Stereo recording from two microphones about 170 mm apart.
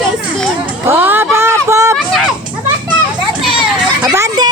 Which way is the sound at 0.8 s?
15° right (ahead or behind).